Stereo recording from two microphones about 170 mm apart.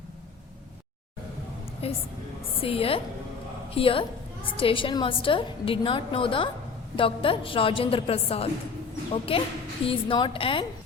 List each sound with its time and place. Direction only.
1.8 s a woman's voice: 35° left (ahead or behind)